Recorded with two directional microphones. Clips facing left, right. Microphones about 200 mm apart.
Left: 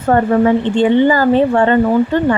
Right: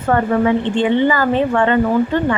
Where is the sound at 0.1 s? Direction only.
40° left (ahead or behind).